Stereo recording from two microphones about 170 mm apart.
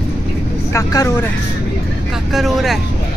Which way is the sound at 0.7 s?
15° left (ahead or behind).